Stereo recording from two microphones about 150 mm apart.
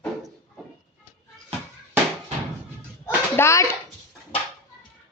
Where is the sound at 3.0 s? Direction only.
15° left (ahead or behind).